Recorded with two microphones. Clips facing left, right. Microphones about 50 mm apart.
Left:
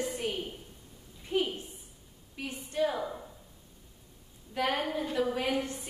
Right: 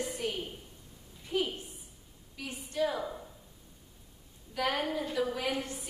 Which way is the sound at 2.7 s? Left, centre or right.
Centre.